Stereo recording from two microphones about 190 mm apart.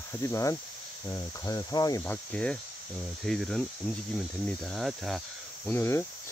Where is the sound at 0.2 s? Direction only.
15° left (ahead or behind).